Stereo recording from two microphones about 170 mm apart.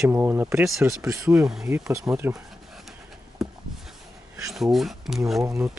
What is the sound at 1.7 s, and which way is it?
Speech, 15° right (ahead or behind).